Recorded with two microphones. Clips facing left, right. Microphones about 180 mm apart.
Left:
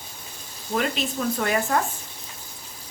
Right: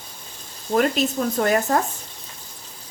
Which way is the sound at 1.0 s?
40° right (ahead or behind).